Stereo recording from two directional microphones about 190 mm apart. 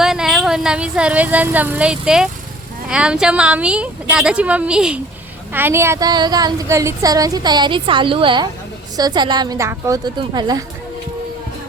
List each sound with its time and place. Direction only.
0.0 s a woman's voice: centre (ahead or behind); by 10.6 s 20° right (ahead or behind)